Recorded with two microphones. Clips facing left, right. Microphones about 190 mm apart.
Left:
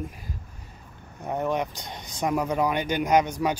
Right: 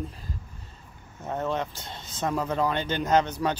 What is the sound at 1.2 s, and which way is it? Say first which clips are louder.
Speech: left 2 dB; 15° left (ahead or behind).